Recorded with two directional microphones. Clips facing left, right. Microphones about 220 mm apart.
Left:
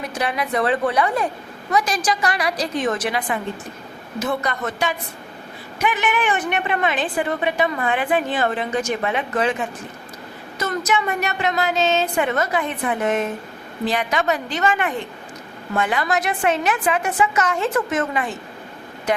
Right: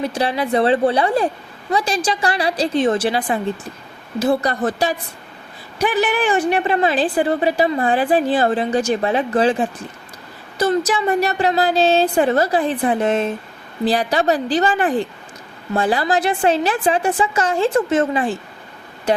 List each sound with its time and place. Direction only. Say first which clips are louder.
0.0 s a woman's voice: right 4 dB; 30° right (ahead or behind)